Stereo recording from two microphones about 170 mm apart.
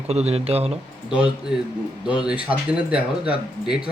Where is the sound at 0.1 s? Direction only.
40° right (ahead or behind).